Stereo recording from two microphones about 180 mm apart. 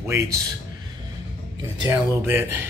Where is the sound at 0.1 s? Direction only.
15° right (ahead or behind).